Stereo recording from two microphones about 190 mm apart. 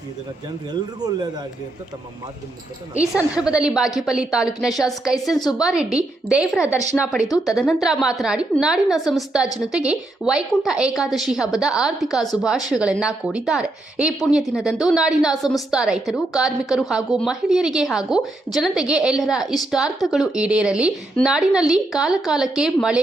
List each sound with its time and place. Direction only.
0.7 s speech: 20° right (ahead or behind)
3.1 s speech: 5° right (ahead or behind)
5.3 s a woman's voice: 20° left (ahead or behind)
5.6 s speech: 5° right (ahead or behind)